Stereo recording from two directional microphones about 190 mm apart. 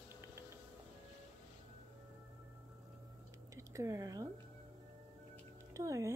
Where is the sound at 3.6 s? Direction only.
15° right (ahead or behind).